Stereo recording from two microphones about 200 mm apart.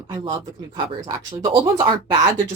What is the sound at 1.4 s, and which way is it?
Speech, 20° right (ahead or behind).